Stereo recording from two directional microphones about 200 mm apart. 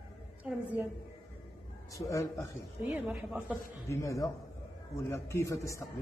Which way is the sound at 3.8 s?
15° left (ahead or behind).